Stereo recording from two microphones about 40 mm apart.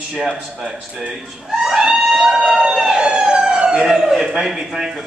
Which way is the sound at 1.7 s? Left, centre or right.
Centre.